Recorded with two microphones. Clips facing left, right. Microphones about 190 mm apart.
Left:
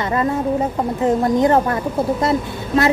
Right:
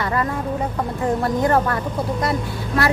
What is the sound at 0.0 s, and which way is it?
A woman's voice, 20° left (ahead or behind).